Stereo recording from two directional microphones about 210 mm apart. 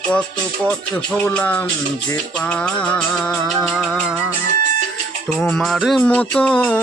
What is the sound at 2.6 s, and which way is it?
Music, 5° left (ahead or behind).